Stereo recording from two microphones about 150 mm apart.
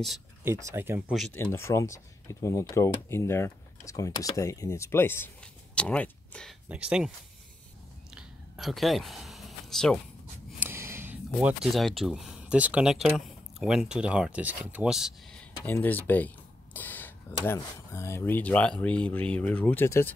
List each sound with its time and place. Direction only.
0.4 s speech: 15° right (ahead or behind)
1.3 s speech: 15° left (ahead or behind)
6.7 s speech: 5° right (ahead or behind)
8.1 s a sound: 5° right (ahead or behind)
10.6 s a sound: 15° right (ahead or behind)
11.7 s speech: centre (ahead or behind)
15.6 s speech: 10° left (ahead or behind)
16.7 s a sound: 10° left (ahead or behind)
17.6 s speech: 20° left (ahead or behind)